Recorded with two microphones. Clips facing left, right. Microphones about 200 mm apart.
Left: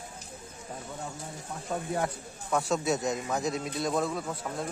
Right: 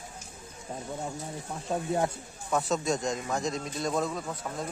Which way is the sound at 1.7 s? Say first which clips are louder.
Right 2 dB; 25° right (ahead or behind).